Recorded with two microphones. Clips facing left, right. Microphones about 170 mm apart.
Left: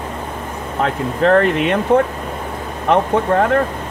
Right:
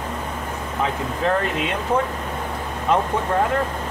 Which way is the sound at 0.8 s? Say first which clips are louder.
Left 7 dB; 65° left (ahead or behind).